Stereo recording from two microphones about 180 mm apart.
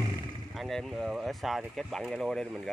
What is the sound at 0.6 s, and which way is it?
Speech, centre (ahead or behind).